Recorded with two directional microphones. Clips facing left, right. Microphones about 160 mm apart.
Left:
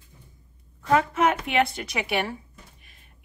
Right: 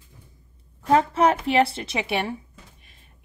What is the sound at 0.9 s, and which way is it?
A woman's voice, 35° right (ahead or behind).